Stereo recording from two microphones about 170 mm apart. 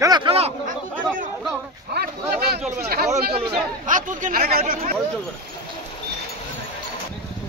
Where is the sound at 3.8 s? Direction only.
50° right (ahead or behind).